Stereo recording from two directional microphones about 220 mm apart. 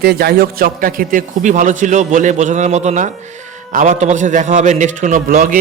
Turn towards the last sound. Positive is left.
turn(degrees=-40)  # may be behind; listen again after turning